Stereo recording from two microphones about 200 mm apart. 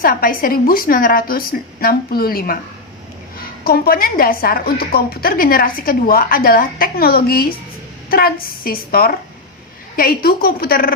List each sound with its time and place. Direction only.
0.0 s a woman's voice: 45° left (ahead or behind)